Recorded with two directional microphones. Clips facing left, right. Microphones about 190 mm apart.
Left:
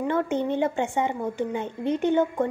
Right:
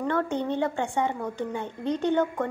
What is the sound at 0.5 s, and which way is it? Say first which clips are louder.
A woman's voice: left 2 dB; 20° left (ahead or behind).